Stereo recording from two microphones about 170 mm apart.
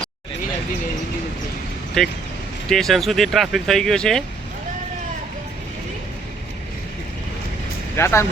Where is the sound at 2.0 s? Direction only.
5° left (ahead or behind).